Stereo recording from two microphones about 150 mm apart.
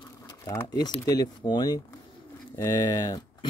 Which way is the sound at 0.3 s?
25° left (ahead or behind).